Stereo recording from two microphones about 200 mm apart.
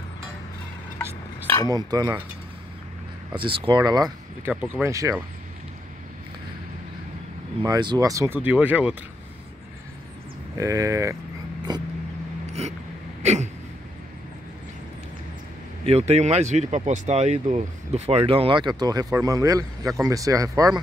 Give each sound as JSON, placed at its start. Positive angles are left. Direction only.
{"t": 1.7, "sound": "speech", "side_deg": -20}
{"t": 3.3, "sound": "speech", "side_deg": -25}
{"t": 4.5, "sound": "speech", "side_deg": -5}
{"t": 7.6, "sound": "speech", "side_deg": -20}
{"t": 10.6, "sound": "speech", "side_deg": -15}
{"t": 12.6, "sound": "speech", "side_deg": -30}
{"t": 13.2, "sound": "a sound", "side_deg": -35}
{"t": 15.8, "sound": "speech", "side_deg": -30}